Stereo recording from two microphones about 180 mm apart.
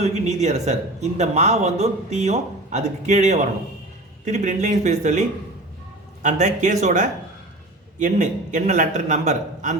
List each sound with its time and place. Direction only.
0.0 s speech: 40° right (ahead or behind)
6.2 s a man's voice: 45° right (ahead or behind)